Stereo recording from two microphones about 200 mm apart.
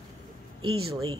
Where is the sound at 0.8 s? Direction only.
90° right.